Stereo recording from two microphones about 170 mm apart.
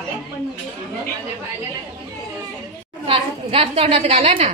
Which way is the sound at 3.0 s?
35° right (ahead or behind).